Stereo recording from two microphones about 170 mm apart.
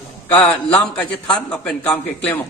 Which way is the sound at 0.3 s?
5° left (ahead or behind).